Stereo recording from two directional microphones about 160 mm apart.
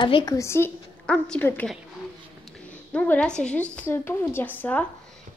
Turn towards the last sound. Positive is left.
turn(degrees=10)  # may be behind; listen again after turning